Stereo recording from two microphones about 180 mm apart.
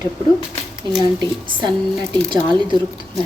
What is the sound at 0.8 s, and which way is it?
A woman's voice, 25° right (ahead or behind).